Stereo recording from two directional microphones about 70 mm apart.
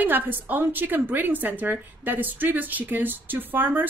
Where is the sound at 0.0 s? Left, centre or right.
Right.